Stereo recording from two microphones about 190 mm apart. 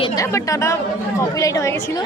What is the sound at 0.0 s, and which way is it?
A woman's voice, 15° left (ahead or behind).